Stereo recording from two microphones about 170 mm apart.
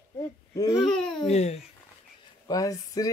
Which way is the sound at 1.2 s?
40° left (ahead or behind).